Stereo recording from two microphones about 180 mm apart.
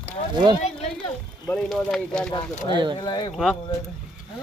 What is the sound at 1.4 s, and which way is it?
Speech, 5° left (ahead or behind).